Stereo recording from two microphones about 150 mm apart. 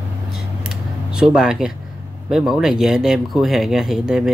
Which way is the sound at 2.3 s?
Centre (ahead or behind).